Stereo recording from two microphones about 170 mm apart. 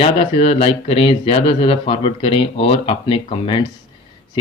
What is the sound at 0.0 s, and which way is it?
Speech, 35° left (ahead or behind).